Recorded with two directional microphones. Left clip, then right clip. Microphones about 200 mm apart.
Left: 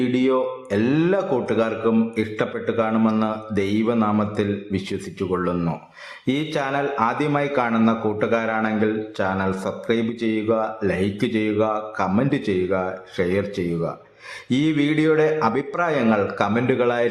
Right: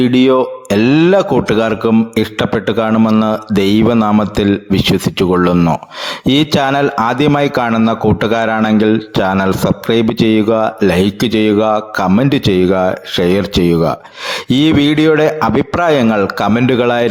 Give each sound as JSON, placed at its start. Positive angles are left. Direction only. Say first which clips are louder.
{"t": 0.0, "sound": "speech", "louder": "right 10 dB", "side_deg": -45}